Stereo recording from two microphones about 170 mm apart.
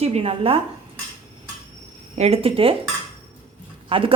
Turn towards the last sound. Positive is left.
turn(degrees=-30)  # may be behind; listen again after turning